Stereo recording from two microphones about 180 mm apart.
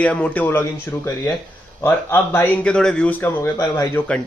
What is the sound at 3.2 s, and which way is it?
Speech, 15° left (ahead or behind).